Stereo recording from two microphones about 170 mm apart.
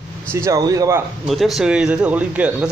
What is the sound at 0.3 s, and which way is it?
Speech, 20° right (ahead or behind).